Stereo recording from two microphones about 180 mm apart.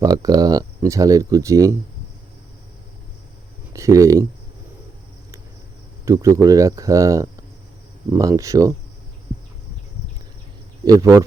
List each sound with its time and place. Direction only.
0.0 s speech: 20° right (ahead or behind)
3.7 s speech: 15° right (ahead or behind)
6.1 s speech: 15° right (ahead or behind)
10.8 s speech: 20° right (ahead or behind)